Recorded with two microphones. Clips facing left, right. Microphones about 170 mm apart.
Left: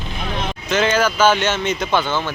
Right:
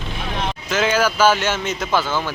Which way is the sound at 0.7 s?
5° right (ahead or behind).